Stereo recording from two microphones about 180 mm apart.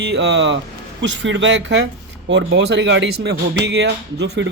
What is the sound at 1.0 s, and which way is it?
Speech, 90° right.